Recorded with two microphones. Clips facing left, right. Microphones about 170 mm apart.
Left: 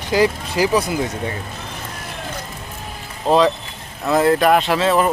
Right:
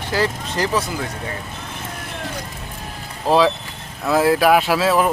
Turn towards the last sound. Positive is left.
turn(degrees=-5)  # may be behind; listen again after turning